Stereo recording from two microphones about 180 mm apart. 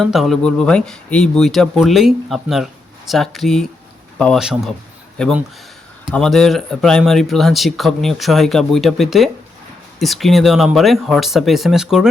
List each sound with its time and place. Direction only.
0.0 s speech: centre (ahead or behind)